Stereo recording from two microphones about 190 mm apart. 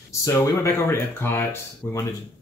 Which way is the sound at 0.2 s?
15° left (ahead or behind).